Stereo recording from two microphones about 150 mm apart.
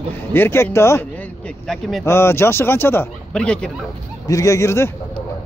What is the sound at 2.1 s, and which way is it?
Speech, 15° left (ahead or behind).